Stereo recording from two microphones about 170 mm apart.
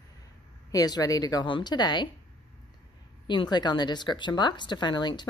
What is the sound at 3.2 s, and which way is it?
Speech, 25° left (ahead or behind).